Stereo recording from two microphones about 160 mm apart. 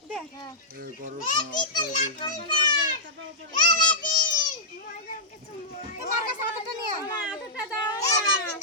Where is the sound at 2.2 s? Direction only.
30° left (ahead or behind).